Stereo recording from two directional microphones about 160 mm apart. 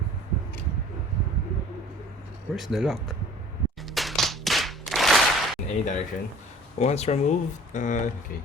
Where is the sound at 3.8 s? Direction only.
Centre (ahead or behind).